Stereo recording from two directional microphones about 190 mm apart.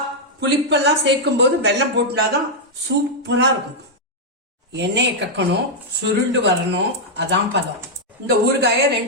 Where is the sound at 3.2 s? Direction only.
65° right (ahead or behind).